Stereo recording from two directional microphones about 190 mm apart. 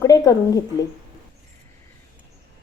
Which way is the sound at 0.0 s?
15° left (ahead or behind).